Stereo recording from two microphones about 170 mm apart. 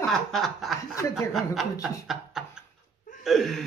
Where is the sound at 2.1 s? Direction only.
5° right (ahead or behind).